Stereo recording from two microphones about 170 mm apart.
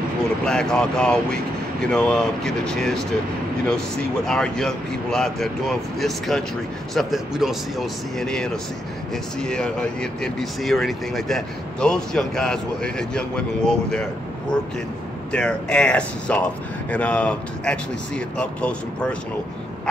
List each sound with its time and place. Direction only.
0.5 s speech: 5° left (ahead or behind)
4.3 s speech: 5° left (ahead or behind)
15.3 s speech: 5° left (ahead or behind)